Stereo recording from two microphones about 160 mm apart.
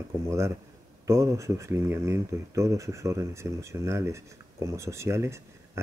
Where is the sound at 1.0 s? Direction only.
20° right (ahead or behind).